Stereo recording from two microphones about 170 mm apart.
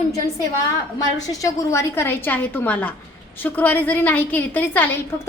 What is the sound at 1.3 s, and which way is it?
A woman's voice, 20° left (ahead or behind).